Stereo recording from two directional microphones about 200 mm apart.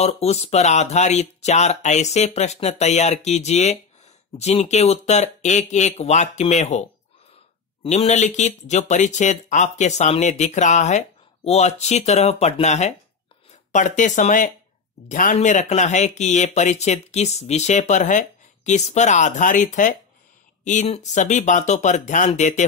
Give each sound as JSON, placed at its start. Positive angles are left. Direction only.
{"t": 0.0, "sound": "speech", "side_deg": 30}